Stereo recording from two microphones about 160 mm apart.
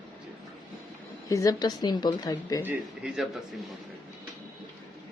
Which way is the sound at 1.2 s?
20° left (ahead or behind).